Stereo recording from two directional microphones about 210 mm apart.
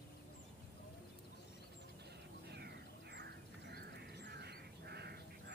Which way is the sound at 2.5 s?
50° right (ahead or behind).